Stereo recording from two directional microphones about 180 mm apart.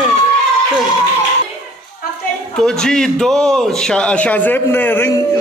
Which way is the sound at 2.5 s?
5° left (ahead or behind).